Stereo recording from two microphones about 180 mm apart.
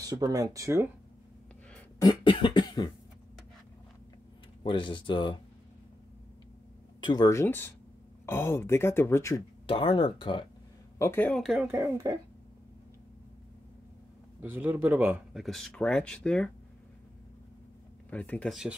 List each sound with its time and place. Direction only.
0.0 s speech: 20° right (ahead or behind)
2.0 s cough: 25° left (ahead or behind)
4.6 s speech: 25° left (ahead or behind)
7.0 s speech: 25° left (ahead or behind)
9.7 s speech: 30° left (ahead or behind)
11.0 s speech: 10° left (ahead or behind)
11.6 s speech: 10° right (ahead or behind)
14.4 s speech: 10° right (ahead or behind); by 16.4 s 5° left (ahead or behind)
18.1 s speech: 5° left (ahead or behind)